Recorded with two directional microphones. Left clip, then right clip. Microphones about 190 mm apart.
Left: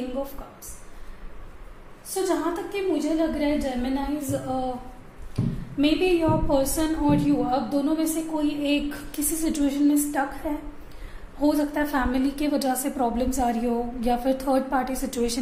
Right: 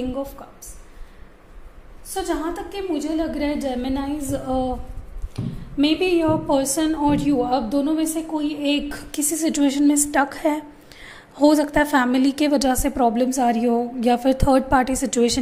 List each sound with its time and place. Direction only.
2.0 s a woman's voice: 55° right (ahead or behind); by 15.3 s 35° right (ahead or behind)